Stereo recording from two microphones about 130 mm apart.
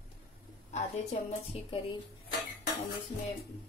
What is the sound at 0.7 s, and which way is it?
Speech, 60° left (ahead or behind).